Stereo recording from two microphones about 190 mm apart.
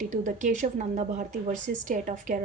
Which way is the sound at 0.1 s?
40° right (ahead or behind).